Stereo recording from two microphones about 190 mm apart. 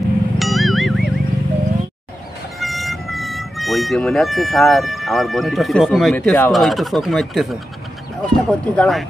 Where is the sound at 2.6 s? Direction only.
Centre (ahead or behind).